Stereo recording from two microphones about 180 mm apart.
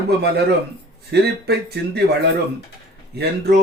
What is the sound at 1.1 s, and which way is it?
Speech, 65° right (ahead or behind).